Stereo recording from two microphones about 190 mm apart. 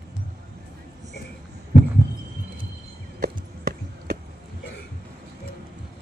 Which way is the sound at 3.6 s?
55° right (ahead or behind).